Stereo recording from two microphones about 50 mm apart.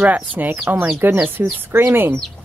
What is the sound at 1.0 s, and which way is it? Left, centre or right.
Speech, right.